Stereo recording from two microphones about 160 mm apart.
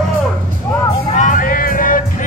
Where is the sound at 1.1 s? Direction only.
55° left (ahead or behind).